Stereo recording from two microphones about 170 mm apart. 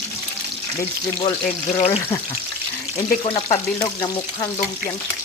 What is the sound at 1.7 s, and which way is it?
Speech, 35° left (ahead or behind).